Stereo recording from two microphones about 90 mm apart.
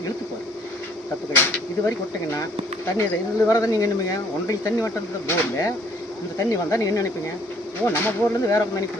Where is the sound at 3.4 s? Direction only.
40° left (ahead or behind).